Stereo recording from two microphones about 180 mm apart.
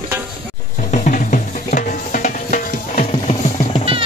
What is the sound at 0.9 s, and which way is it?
Music, 45° left (ahead or behind).